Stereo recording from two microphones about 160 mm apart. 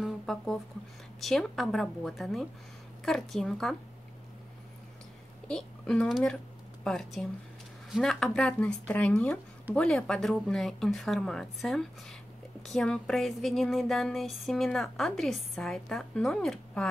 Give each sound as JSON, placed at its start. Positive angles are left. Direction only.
{"t": 0.0, "sound": "a sound", "side_deg": 0}
{"t": 1.2, "sound": "speech", "side_deg": 0}
{"t": 5.5, "sound": "speech", "side_deg": 5}